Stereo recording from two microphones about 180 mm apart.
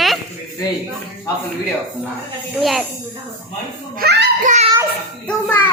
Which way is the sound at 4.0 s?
65° right (ahead or behind).